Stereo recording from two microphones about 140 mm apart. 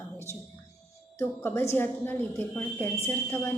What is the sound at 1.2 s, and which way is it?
A woman's voice, 15° left (ahead or behind).